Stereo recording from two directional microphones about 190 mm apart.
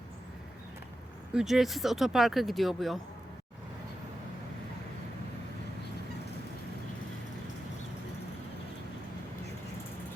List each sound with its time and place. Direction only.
1.3 s speech: 5° right (ahead or behind)